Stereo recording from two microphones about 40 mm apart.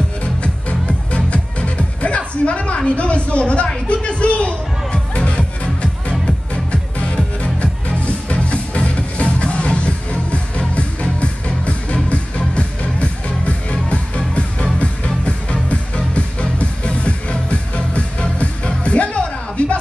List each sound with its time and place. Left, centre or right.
0.2 s music: left